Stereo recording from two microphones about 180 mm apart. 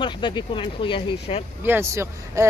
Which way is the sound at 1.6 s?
15° right (ahead or behind).